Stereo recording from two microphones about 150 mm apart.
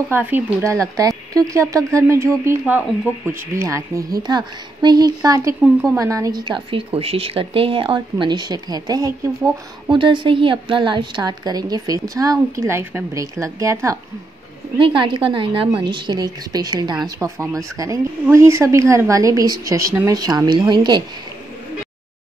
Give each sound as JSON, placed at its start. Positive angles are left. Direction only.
{"t": 0.1, "sound": "a woman's voice", "side_deg": -10}
{"t": 5.6, "sound": "speech", "side_deg": 0}
{"t": 5.9, "sound": "a woman's voice", "side_deg": -20}
{"t": 9.8, "sound": "a woman's voice", "side_deg": -35}
{"t": 14.8, "sound": "a woman's voice", "side_deg": -35}